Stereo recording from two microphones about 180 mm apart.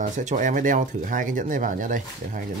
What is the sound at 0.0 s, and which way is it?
Speech, 45° right (ahead or behind).